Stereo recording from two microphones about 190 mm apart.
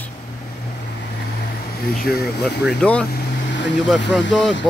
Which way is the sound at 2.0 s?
55° left (ahead or behind).